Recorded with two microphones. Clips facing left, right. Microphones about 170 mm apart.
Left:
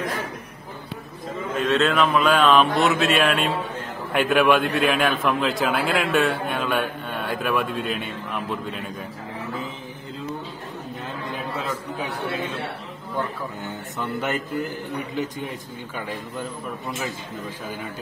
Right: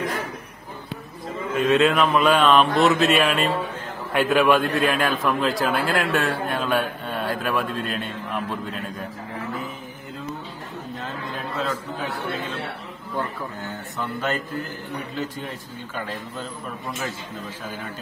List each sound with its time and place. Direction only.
1.6 s a man's voice: centre (ahead or behind)
13.7 s speech: 20° left (ahead or behind)